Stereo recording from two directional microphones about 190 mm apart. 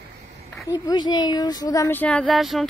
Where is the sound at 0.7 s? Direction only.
20° left (ahead or behind).